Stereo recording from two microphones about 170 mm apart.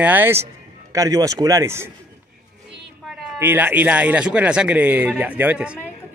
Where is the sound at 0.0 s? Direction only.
10° right (ahead or behind).